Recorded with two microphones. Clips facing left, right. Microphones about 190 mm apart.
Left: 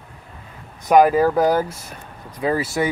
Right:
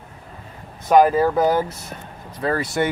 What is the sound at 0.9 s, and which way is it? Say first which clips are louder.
Speech: left 1 dB; 10° left (ahead or behind).